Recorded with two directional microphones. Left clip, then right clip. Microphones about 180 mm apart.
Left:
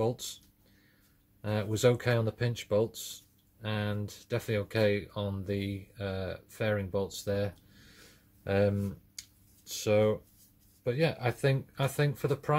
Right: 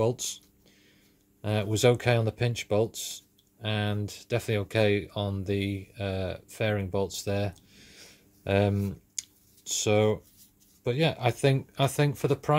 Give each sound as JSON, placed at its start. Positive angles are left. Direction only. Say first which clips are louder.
{"t": 0.0, "sound": "speech", "louder": "right 4 dB", "side_deg": -30}
{"t": 1.4, "sound": "speech", "louder": "right 3 dB", "side_deg": -30}